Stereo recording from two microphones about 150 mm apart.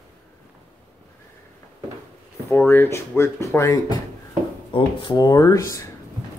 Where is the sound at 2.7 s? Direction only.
15° left (ahead or behind).